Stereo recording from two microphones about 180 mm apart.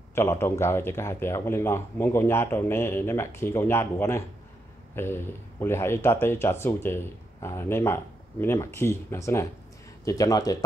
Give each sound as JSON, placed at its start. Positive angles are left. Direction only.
{"t": 0.1, "sound": "a man's voice", "side_deg": 15}